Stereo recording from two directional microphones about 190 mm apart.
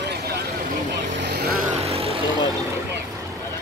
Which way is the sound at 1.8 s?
30° right (ahead or behind).